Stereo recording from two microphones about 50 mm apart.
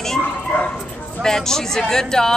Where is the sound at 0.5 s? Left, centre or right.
Left.